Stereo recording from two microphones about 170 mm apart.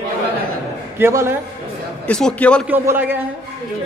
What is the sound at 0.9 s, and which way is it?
Speech, 15° right (ahead or behind).